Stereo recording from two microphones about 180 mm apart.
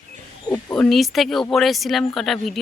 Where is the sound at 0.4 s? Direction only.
15° left (ahead or behind).